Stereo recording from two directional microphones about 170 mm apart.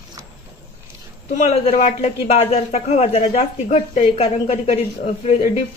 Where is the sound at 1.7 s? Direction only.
45° left (ahead or behind).